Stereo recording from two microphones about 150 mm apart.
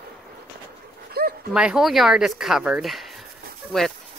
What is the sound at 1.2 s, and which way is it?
Dog, 90° right.